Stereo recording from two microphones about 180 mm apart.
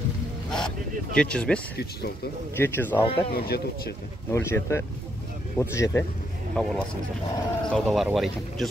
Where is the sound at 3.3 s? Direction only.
60° left (ahead or behind).